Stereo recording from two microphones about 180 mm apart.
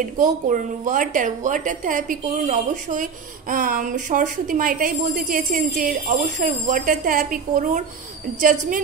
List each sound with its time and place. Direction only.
0.0 s speech: 45° right (ahead or behind)